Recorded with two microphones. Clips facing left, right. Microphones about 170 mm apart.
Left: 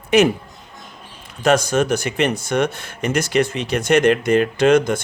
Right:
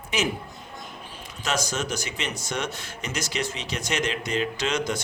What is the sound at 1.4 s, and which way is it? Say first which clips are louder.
Speech: left 12 dB; 55° left (ahead or behind).